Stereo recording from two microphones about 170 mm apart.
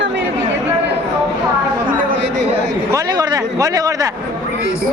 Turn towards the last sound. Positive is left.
turn(degrees=-20)  # may be behind; listen again after turning